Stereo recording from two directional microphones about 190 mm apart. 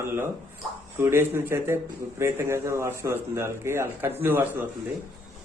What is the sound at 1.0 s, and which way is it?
Speech, 10° right (ahead or behind).